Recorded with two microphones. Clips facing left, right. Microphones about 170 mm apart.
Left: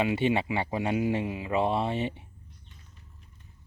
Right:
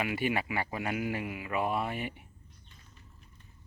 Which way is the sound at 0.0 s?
25° left (ahead or behind).